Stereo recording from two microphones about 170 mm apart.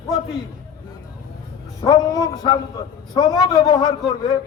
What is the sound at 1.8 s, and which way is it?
A man's voice, 20° left (ahead or behind).